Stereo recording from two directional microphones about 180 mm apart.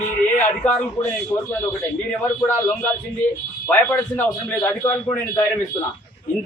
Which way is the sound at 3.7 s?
10° left (ahead or behind).